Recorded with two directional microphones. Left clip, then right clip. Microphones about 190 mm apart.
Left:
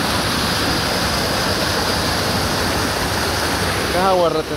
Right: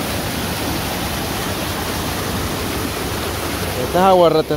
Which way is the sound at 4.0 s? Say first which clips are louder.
Right 5 dB; 55° right (ahead or behind).